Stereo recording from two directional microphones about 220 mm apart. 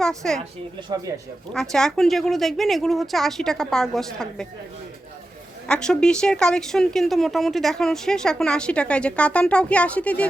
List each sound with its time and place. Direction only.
0.0 s a woman's voice: centre (ahead or behind)
0.8 s speech: 20° right (ahead or behind)
1.7 s a woman's voice: centre (ahead or behind)
5.6 s a woman's voice: 5° left (ahead or behind)